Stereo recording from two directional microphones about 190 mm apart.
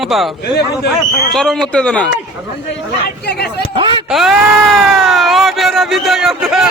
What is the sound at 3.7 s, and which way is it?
Speech, 25° right (ahead or behind).